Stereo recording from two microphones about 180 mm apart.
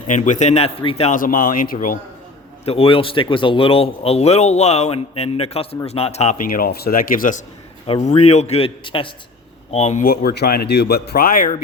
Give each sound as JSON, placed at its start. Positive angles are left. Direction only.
{"t": 0.1, "sound": "speech", "side_deg": 40}
{"t": 2.6, "sound": "a man's voice", "side_deg": 30}
{"t": 8.0, "sound": "a man's voice", "side_deg": 40}
{"t": 9.7, "sound": "speech", "side_deg": 40}